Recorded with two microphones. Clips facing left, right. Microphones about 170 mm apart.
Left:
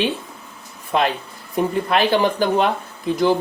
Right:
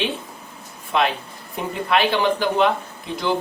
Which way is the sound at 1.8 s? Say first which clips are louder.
Right 1 dB; 40° left (ahead or behind).